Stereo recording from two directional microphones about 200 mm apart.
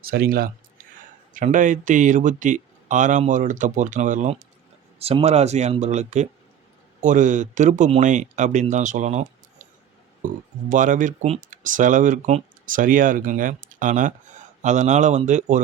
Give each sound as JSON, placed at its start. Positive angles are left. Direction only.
{"t": 0.0, "sound": "speech", "side_deg": -50}